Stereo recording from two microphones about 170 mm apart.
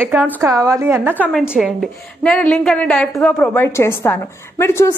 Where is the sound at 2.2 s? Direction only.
5° left (ahead or behind).